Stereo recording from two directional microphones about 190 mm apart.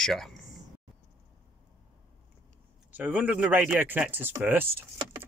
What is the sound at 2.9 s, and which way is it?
Speech, 10° right (ahead or behind).